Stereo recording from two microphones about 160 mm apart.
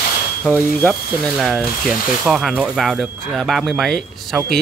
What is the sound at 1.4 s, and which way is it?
Speech, 5° right (ahead or behind).